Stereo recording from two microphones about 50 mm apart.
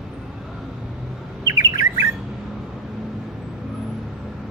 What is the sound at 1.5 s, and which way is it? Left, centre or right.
Bird, right.